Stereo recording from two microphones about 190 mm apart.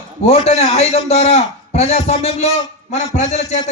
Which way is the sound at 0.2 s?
35° left (ahead or behind).